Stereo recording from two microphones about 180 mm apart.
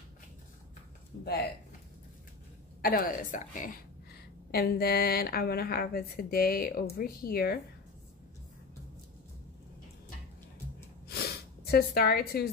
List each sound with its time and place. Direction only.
2.8 s a woman's voice: 55° left (ahead or behind)
11.1 s snort: 60° left (ahead or behind)